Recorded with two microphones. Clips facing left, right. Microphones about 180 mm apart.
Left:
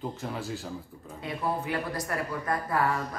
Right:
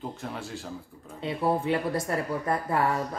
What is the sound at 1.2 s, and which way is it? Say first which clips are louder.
A woman's voice: right 5 dB; 25° right (ahead or behind).